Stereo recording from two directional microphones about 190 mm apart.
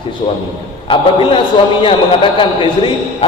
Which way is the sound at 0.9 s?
25° left (ahead or behind).